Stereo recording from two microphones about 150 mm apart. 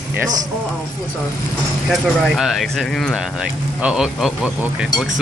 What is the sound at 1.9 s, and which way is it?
Speech, centre (ahead or behind).